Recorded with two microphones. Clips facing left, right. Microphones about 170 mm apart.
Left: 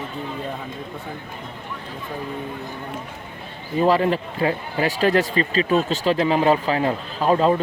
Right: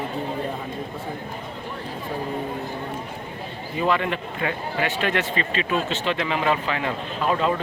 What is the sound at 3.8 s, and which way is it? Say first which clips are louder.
Speech: left 5 dB; 35° left (ahead or behind).